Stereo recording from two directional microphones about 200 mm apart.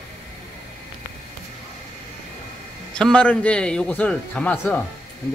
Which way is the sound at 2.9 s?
5° left (ahead or behind).